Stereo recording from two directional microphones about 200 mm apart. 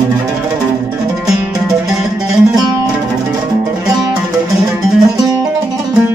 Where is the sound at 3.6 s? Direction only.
20° right (ahead or behind).